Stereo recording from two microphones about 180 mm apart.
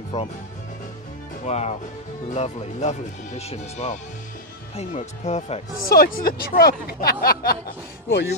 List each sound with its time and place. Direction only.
0.1 s speech: 40° left (ahead or behind)
1.4 s speech: 35° left (ahead or behind)
5.9 s speech: 55° left (ahead or behind)